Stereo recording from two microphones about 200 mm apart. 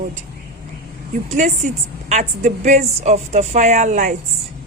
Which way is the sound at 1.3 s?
35° right (ahead or behind).